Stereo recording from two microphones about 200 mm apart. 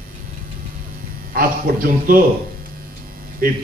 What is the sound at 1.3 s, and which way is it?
Speech, 45° right (ahead or behind).